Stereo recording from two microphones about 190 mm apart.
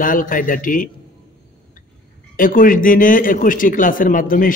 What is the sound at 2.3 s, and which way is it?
Speech, 45° left (ahead or behind).